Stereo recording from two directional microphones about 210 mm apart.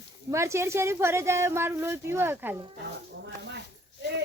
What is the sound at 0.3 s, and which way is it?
Speech, 15° right (ahead or behind).